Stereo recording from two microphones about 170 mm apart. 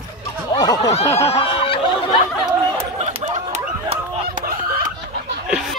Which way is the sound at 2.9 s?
40° right (ahead or behind).